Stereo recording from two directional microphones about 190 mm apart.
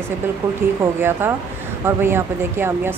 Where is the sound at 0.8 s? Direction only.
10° right (ahead or behind).